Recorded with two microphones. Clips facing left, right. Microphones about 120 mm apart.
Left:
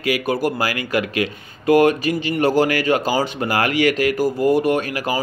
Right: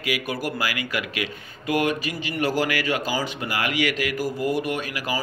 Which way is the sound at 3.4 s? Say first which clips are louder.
Left 6 dB; 45° left (ahead or behind).